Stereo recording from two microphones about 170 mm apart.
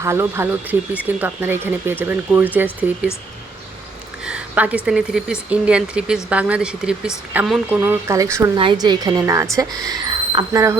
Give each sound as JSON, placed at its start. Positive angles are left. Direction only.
{"t": 0.0, "sound": "speech", "side_deg": -15}
{"t": 4.3, "sound": "speech", "side_deg": -5}
{"t": 8.5, "sound": "speech", "side_deg": -30}